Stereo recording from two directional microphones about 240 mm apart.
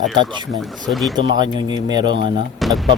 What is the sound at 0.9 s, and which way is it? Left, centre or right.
Speech, centre.